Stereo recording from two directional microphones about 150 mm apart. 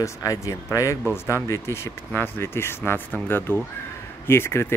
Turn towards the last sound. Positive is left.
turn(degrees=15)  # may be behind; listen again after turning